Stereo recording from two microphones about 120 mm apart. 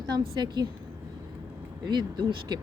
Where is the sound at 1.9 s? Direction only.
40° right (ahead or behind).